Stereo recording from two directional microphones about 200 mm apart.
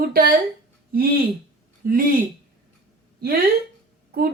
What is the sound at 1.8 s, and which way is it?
Speech, 45° right (ahead or behind).